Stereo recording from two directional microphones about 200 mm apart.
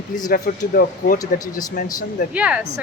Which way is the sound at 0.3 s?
45° left (ahead or behind).